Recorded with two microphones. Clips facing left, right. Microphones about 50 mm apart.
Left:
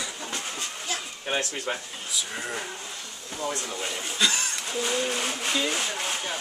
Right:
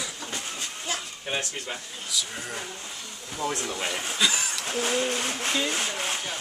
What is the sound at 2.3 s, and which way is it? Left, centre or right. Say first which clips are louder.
Speech: left 2 dB; centre.